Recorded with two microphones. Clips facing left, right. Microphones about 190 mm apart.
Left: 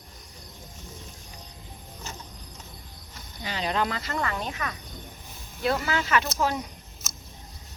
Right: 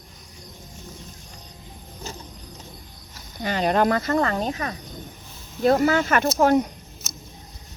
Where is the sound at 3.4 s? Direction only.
50° right (ahead or behind).